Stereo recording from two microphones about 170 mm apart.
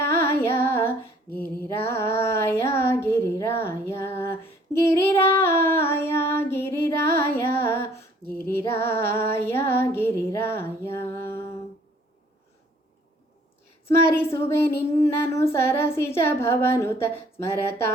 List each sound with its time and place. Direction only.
0.1 s female singing: 15° left (ahead or behind)
1.3 s female singing: 65° left (ahead or behind)
1.6 s child singing: 15° left (ahead or behind)
5.3 s female singing: 15° left (ahead or behind)
7.2 s carnatic music: 15° left (ahead or behind)
8.4 s female singing: 15° left (ahead or behind)
13.8 s a woman's voice: 15° left (ahead or behind)